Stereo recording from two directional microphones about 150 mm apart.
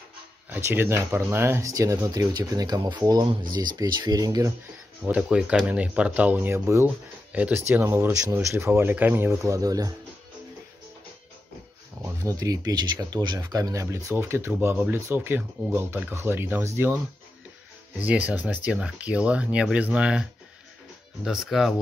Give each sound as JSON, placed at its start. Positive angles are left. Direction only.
{"t": 0.7, "sound": "speech", "side_deg": -15}
{"t": 5.0, "sound": "speech", "side_deg": -5}
{"t": 12.0, "sound": "speech", "side_deg": -20}